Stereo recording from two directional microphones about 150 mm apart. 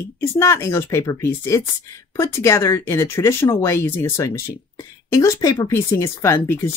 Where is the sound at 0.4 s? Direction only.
15° left (ahead or behind).